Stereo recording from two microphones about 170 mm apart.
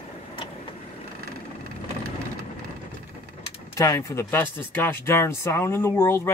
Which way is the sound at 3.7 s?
15° left (ahead or behind).